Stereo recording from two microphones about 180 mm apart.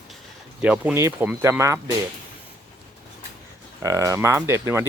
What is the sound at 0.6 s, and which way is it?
Speech, 10° right (ahead or behind).